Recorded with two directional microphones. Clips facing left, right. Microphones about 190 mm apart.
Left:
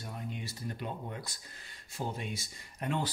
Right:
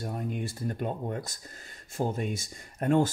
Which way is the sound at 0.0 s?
50° right (ahead or behind).